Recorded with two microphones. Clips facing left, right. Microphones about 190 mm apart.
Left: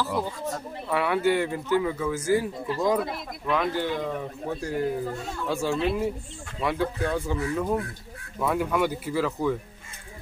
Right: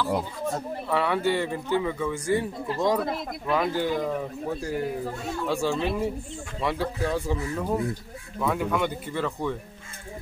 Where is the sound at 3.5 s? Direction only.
5° right (ahead or behind).